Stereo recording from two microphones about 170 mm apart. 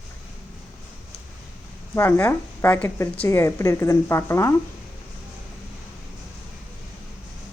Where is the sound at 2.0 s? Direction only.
15° left (ahead or behind).